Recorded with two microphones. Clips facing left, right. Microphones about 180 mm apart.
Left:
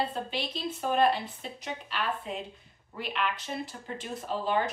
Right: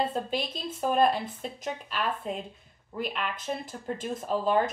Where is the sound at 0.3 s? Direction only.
50° right (ahead or behind).